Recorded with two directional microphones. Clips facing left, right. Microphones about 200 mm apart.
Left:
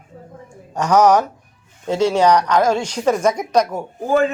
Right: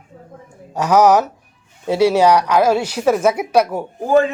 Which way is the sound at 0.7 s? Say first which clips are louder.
Right 1 dB; 10° right (ahead or behind).